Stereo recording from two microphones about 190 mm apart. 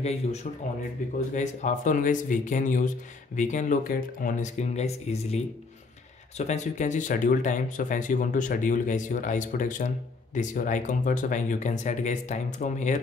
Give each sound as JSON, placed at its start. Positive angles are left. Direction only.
{"t": 0.0, "sound": "speech", "side_deg": 35}